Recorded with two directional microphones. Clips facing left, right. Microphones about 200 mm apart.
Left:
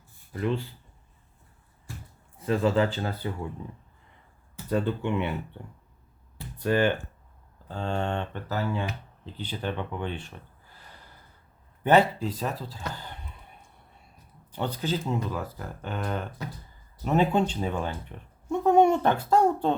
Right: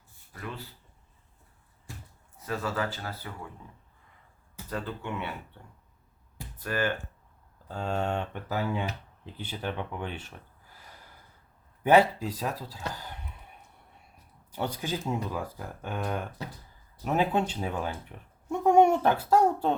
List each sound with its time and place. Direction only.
0.3 s speech: 25° left (ahead or behind)
2.4 s speech: 25° left (ahead or behind)
4.7 s speech: 25° left (ahead or behind)
6.6 s speech: 25° left (ahead or behind)
7.7 s speech: 5° right (ahead or behind)
11.8 s speech: 10° right (ahead or behind)
13.0 s a sound: 5° right (ahead or behind)
14.5 s speech: 10° right (ahead or behind)